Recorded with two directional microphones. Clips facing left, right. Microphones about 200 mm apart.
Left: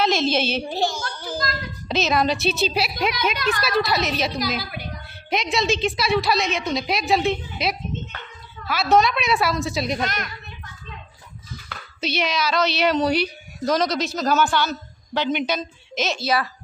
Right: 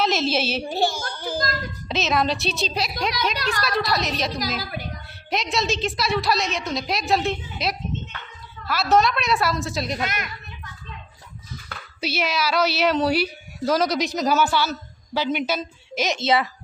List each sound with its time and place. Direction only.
0.0 s a woman's voice: 5° right (ahead or behind)
3.3 s a woman's voice: 35° right (ahead or behind)
3.6 s a woman's voice: centre (ahead or behind)
5.3 s a woman's voice: centre (ahead or behind)
12.0 s speech: 5° right (ahead or behind)
16.2 s a woman's voice: 25° right (ahead or behind)